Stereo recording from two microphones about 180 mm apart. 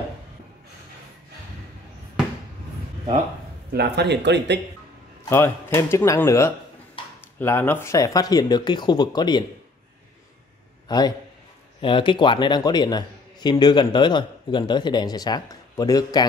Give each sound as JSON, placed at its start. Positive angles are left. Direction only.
{"t": 3.7, "sound": "speech", "side_deg": -65}
{"t": 5.3, "sound": "a man's voice", "side_deg": 15}
{"t": 10.9, "sound": "a man's voice", "side_deg": 20}